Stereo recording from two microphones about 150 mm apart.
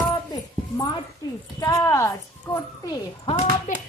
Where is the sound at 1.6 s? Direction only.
20° left (ahead or behind).